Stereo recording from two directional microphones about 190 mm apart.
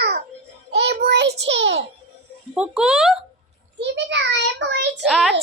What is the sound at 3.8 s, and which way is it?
A child's voice, 65° right (ahead or behind).